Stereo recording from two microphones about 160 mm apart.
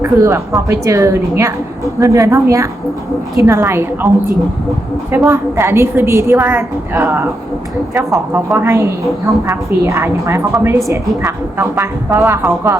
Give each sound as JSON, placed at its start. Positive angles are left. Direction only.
{"t": 0.0, "sound": "a woman's voice", "side_deg": -20}
{"t": 5.1, "sound": "a woman's voice", "side_deg": -15}
{"t": 8.3, "sound": "a woman's voice", "side_deg": -15}